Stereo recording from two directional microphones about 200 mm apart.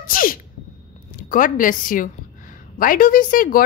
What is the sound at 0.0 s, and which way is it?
Sneeze, 45° left (ahead or behind).